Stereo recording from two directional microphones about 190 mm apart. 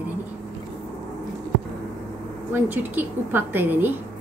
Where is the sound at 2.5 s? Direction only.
10° right (ahead or behind).